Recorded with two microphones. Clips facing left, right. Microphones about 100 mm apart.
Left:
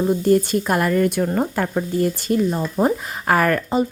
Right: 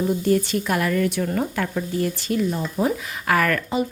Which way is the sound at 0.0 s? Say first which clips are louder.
Left 4 dB; 35° left (ahead or behind).